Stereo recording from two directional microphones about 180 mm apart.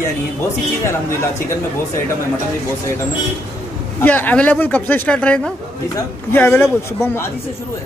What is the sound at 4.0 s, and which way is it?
A man's voice, 10° left (ahead or behind).